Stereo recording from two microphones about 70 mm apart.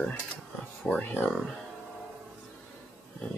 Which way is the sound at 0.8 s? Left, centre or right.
Centre.